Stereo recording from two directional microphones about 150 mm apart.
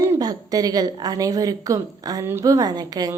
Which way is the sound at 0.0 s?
25° right (ahead or behind).